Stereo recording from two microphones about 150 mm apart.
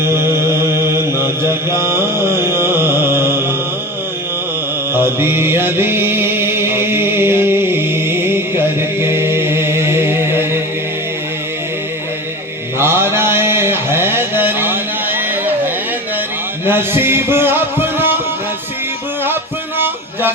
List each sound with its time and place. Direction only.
0.0 s mantra: 15° right (ahead or behind)
4.9 s mantra: 15° right (ahead or behind)
12.8 s a sound: 15° right (ahead or behind)
16.6 s music: 15° right (ahead or behind)